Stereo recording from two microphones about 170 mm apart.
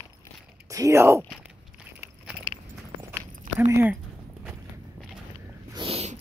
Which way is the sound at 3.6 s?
15° right (ahead or behind).